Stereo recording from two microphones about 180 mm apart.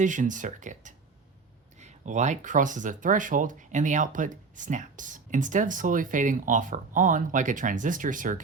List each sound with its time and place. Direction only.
0.0 s speech: 45° right (ahead or behind)